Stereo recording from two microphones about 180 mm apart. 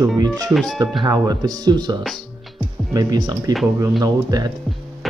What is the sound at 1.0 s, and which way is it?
Speech, 20° right (ahead or behind).